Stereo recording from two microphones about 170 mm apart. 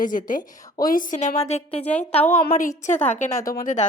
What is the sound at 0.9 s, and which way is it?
A woman's voice, 50° left (ahead or behind).